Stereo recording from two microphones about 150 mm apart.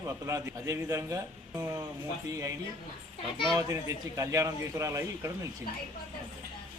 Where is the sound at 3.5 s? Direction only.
20° right (ahead or behind).